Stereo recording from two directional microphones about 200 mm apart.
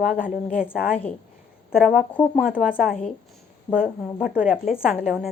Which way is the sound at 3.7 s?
5° right (ahead or behind).